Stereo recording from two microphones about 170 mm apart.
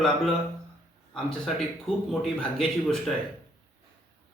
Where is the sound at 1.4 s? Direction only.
Centre (ahead or behind).